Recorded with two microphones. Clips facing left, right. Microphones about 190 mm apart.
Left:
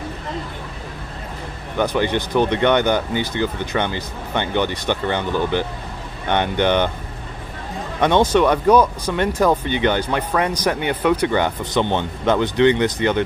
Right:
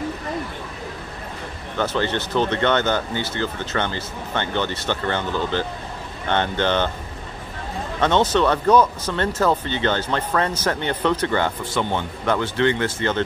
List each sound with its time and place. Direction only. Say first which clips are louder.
1.8 s speech: left 3 dB; 15° left (ahead or behind)
8.0 s speech: left 3 dB; 10° left (ahead or behind)